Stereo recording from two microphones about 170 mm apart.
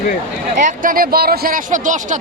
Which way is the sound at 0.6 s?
55° right (ahead or behind).